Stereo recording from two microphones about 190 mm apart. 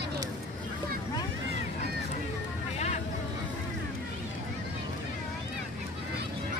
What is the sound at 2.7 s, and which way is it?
Vehicle, 35° left (ahead or behind).